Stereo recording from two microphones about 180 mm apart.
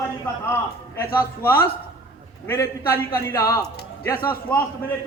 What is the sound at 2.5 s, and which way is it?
A man's voice, 15° left (ahead or behind).